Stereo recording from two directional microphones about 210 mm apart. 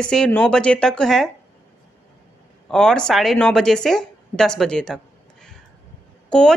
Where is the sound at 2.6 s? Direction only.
5° left (ahead or behind).